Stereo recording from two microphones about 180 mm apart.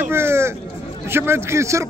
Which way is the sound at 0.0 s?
15° right (ahead or behind).